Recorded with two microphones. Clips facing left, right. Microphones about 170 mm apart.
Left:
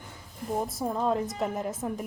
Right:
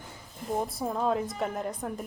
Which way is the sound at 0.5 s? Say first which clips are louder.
Left 1 dB; centre (ahead or behind).